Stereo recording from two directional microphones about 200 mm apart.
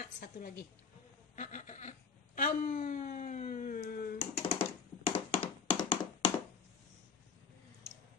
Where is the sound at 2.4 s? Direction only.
45° left (ahead or behind).